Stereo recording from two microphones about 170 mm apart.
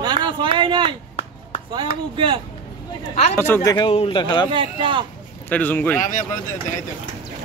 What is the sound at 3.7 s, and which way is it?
Speech, 30° left (ahead or behind).